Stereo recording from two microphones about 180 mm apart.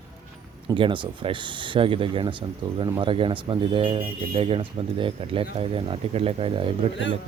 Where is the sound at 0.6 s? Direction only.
25° right (ahead or behind).